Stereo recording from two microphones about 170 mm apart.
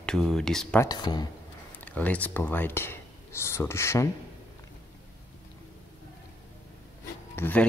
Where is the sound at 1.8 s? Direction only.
10° left (ahead or behind).